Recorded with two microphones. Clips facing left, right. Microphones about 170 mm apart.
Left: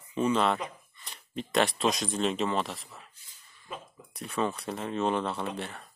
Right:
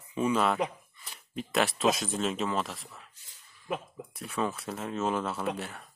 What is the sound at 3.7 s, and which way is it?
Speech, 70° right (ahead or behind).